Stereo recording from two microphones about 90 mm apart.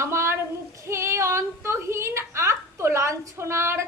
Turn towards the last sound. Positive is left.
turn(degrees=-30)  # may be behind; listen again after turning